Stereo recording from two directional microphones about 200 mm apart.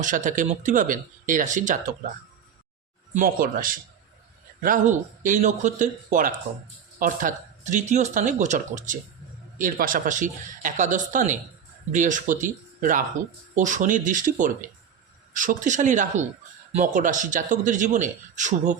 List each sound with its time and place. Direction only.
0.0 s speech: 40° right (ahead or behind)
3.2 s speech: 45° right (ahead or behind)